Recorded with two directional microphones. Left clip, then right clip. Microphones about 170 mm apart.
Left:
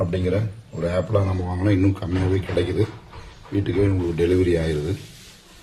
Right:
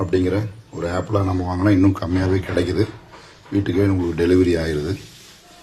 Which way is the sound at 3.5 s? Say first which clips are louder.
Right 3 dB; 20° right (ahead or behind).